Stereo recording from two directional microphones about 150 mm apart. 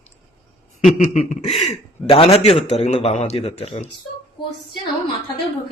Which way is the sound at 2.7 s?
50° left (ahead or behind).